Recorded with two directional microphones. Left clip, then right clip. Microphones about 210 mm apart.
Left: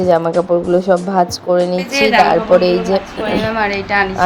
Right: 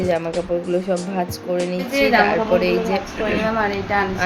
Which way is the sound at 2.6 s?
25° left (ahead or behind).